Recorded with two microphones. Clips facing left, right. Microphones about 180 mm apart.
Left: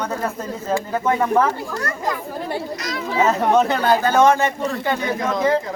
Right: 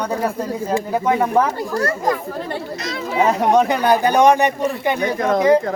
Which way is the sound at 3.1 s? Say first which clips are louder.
Right 1 dB; 15° right (ahead or behind).